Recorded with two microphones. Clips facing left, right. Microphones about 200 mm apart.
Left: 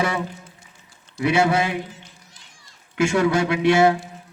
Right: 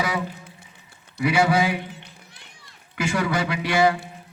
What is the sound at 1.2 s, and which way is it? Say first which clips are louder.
Speech: left 1 dB; 25° left (ahead or behind).